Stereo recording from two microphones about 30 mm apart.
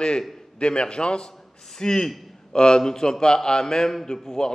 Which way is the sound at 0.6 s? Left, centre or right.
Left.